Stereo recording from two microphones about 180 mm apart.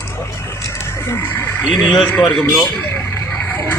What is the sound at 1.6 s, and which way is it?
Speech, centre (ahead or behind).